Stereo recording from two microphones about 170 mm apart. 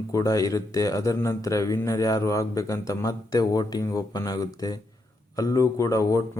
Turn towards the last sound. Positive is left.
turn(degrees=20)  # may be behind; listen again after turning